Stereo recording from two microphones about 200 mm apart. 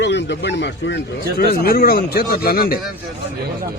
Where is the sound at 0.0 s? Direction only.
60° left (ahead or behind).